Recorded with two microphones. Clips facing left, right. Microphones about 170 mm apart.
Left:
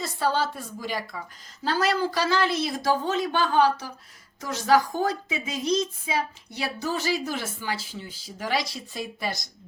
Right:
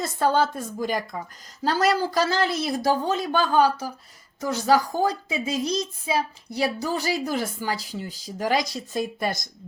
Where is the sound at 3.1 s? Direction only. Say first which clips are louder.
Right 2 dB; 40° right (ahead or behind).